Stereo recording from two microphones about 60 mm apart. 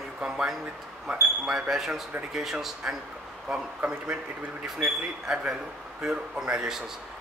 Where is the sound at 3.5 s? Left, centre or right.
Centre.